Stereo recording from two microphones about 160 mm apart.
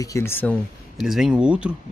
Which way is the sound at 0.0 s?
20° left (ahead or behind).